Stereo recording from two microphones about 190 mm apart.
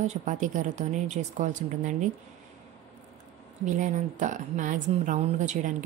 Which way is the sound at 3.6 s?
40° right (ahead or behind).